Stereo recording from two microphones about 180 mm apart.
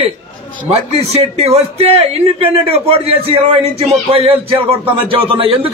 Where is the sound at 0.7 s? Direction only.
35° right (ahead or behind).